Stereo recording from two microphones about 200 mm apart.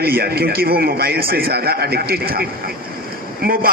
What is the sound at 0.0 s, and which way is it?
A man's voice, 50° right (ahead or behind).